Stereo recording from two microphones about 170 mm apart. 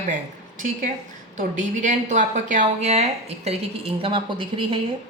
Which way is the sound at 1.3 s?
45° right (ahead or behind).